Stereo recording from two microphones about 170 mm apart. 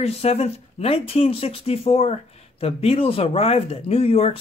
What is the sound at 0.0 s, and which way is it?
Speech, 40° left (ahead or behind).